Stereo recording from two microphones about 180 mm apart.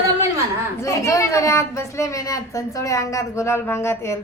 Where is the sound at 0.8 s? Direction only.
15° left (ahead or behind).